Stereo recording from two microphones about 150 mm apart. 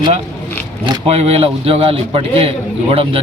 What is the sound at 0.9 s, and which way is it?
A man's voice, 45° right (ahead or behind).